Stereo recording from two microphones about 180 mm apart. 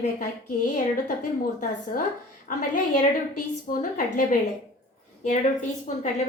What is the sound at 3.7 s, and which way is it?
Speech, 50° left (ahead or behind).